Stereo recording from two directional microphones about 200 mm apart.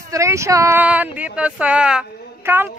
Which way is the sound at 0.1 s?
15° right (ahead or behind).